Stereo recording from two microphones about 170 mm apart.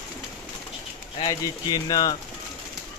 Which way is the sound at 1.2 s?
20° left (ahead or behind).